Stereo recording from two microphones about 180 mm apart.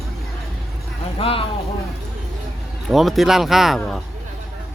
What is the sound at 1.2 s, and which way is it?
Speech, 30° left (ahead or behind).